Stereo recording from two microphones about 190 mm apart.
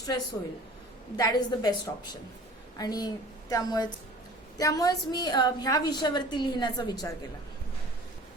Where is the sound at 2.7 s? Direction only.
20° left (ahead or behind).